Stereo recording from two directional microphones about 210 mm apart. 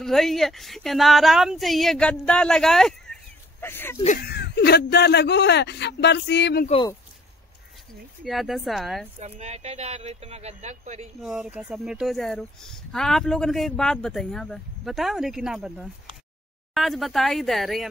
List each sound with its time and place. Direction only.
0.0 s speech: centre (ahead or behind)
4.0 s speech: 35° left (ahead or behind)
4.3 s speech: 50° left (ahead or behind)
8.2 s speech: centre (ahead or behind)
9.2 s speech: 30° right (ahead or behind)
11.1 s speech: centre (ahead or behind)